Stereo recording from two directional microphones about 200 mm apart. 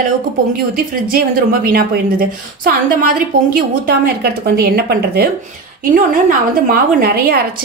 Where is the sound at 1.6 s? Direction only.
45° right (ahead or behind).